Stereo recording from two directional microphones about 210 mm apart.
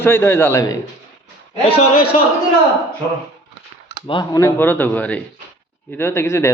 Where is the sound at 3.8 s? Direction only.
25° left (ahead or behind).